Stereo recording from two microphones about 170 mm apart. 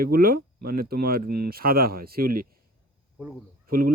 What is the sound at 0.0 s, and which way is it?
Speech, 60° right (ahead or behind).